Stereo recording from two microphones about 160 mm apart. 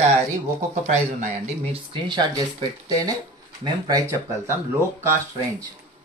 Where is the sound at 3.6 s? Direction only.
20° right (ahead or behind).